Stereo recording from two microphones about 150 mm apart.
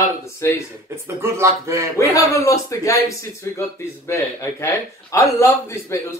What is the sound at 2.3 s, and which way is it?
A man's voice, 20° left (ahead or behind).